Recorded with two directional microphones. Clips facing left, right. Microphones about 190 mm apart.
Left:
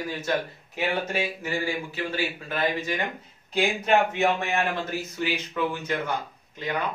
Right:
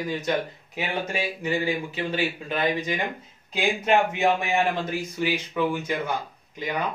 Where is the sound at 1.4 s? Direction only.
20° right (ahead or behind).